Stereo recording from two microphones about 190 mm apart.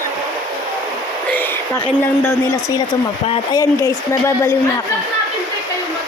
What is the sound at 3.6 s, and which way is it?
Speech, 15° left (ahead or behind).